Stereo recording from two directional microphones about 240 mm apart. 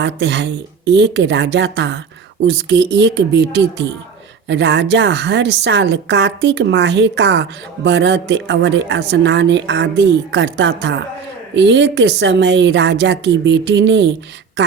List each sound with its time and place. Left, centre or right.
0.0 s speech: right